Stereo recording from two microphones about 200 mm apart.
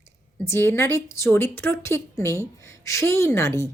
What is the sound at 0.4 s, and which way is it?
A woman's voice, 10° left (ahead or behind).